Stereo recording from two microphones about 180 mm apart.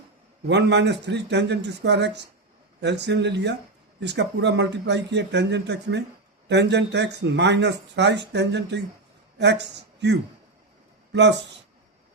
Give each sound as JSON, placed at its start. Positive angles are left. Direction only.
{"t": 0.4, "sound": "a man's voice", "side_deg": -80}